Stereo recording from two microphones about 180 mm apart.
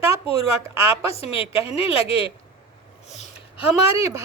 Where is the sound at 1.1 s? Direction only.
35° left (ahead or behind).